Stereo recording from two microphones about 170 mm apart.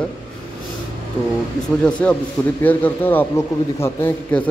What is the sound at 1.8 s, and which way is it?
A man's voice, 5° left (ahead or behind).